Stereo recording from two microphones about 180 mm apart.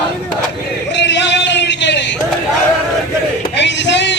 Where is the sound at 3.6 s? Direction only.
80° left.